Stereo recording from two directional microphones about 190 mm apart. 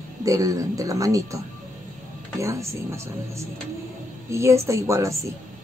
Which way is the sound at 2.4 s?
15° right (ahead or behind).